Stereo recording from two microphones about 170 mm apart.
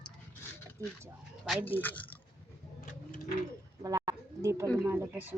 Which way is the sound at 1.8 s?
10° left (ahead or behind).